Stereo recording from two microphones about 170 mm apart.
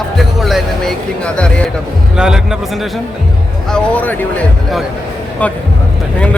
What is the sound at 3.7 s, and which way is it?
Speech, 5° left (ahead or behind).